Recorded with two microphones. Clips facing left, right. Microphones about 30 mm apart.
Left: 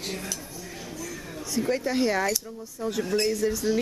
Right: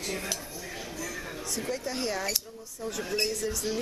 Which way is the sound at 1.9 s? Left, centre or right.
Centre.